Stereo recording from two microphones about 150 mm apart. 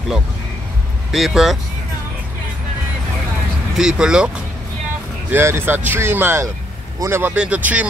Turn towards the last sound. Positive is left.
turn(degrees=-10)  # may be behind; listen again after turning